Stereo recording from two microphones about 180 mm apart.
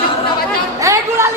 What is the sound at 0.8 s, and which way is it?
Speech, 15° right (ahead or behind).